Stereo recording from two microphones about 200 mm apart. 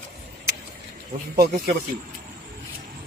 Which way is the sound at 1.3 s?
50° right (ahead or behind).